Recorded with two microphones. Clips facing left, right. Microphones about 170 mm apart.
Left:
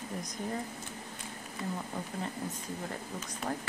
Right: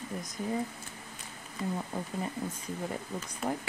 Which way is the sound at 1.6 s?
10° right (ahead or behind).